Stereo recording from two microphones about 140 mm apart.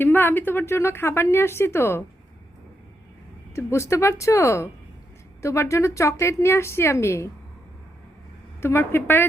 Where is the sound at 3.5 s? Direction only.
20° left (ahead or behind).